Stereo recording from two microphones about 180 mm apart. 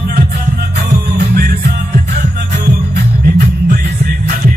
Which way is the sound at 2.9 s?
60° right (ahead or behind).